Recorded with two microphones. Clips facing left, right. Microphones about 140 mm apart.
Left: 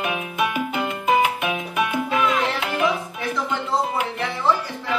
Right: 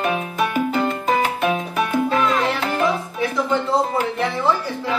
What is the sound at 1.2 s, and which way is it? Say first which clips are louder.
Music: right 3 dB; 35° right (ahead or behind).